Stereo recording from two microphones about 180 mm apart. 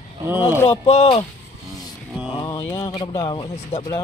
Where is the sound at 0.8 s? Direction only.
35° left (ahead or behind).